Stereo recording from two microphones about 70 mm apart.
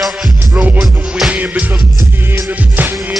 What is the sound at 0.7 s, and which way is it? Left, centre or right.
Music, centre.